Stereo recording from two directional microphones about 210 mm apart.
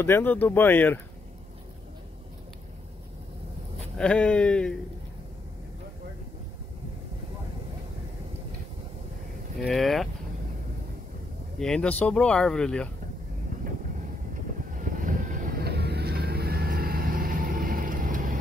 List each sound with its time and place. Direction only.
0.0 s speech: 10° left (ahead or behind)
3.9 s speech: 5° left (ahead or behind)
9.6 s speech: centre (ahead or behind)
11.6 s speech: 5° left (ahead or behind)
14.8 s vehicle: 40° right (ahead or behind)